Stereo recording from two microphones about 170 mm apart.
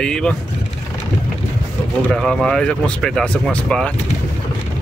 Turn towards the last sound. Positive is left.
turn(degrees=5)  # may be behind; listen again after turning